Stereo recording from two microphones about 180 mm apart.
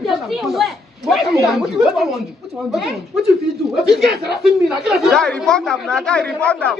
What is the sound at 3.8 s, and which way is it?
A woman's voice, centre (ahead or behind).